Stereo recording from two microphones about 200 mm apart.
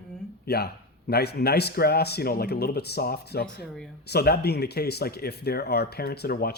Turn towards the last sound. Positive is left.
turn(degrees=50)  # may be behind; listen again after turning